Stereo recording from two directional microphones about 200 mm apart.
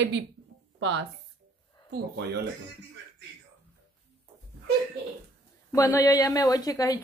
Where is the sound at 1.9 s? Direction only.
55° right (ahead or behind).